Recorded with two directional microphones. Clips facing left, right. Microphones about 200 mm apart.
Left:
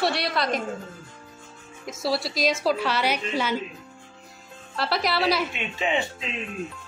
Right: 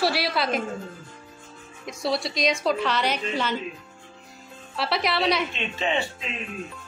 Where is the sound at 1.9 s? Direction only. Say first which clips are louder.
Even; 5° left (ahead or behind).